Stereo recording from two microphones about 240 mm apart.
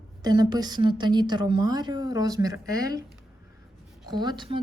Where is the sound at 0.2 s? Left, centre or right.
Centre.